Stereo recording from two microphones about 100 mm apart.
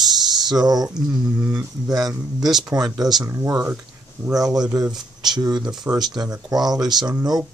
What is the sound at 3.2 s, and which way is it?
Speech, 30° right (ahead or behind).